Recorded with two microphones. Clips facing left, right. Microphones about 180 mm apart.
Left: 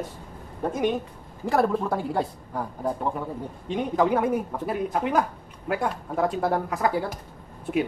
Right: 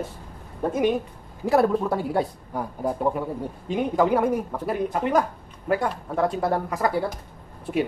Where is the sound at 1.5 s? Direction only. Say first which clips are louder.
Right 3 dB; 5° right (ahead or behind).